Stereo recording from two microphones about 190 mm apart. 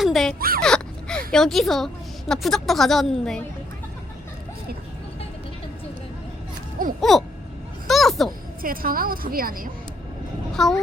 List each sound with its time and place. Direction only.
0.0 s a sound: centre (ahead or behind)
0.3 s dog: 50° right (ahead or behind)
0.6 s gasp: 5° left (ahead or behind)
1.3 s speech: centre (ahead or behind)
7.0 s speech: centre (ahead or behind)
7.9 s a sound: centre (ahead or behind)
8.6 s a woman's voice: 50° right (ahead or behind)
10.5 s speech: centre (ahead or behind)